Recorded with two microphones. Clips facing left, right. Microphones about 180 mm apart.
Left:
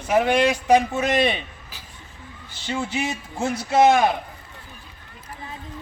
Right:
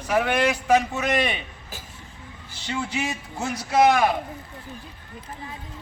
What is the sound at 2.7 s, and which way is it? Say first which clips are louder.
A man's voice: left 2 dB; 25° left (ahead or behind).